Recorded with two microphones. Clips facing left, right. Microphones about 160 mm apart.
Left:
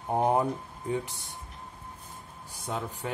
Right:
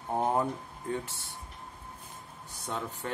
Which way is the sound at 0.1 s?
15° left (ahead or behind).